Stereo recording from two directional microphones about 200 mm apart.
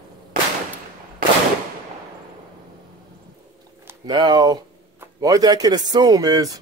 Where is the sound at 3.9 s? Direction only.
20° right (ahead or behind).